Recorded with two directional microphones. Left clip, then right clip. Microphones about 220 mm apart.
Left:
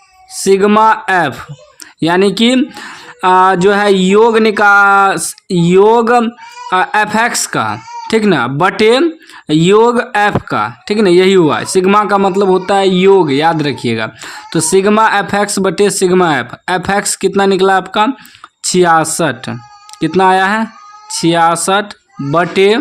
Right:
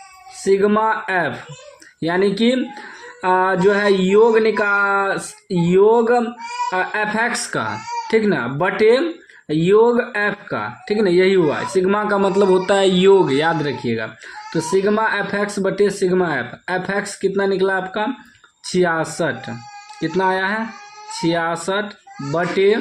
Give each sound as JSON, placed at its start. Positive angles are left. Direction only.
{"t": 0.4, "sound": "speech", "side_deg": 40}